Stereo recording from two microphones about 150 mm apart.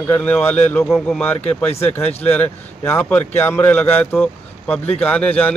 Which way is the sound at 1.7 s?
45° left (ahead or behind).